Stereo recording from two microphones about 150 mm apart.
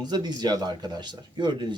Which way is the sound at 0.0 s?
30° right (ahead or behind).